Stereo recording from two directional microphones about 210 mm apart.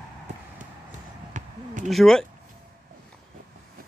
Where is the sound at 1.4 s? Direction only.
35° right (ahead or behind).